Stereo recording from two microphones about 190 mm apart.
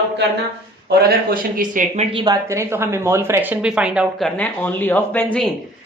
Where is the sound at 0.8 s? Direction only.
55° right (ahead or behind).